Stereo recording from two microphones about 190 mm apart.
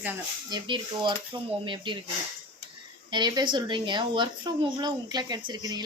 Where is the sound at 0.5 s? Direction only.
25° right (ahead or behind).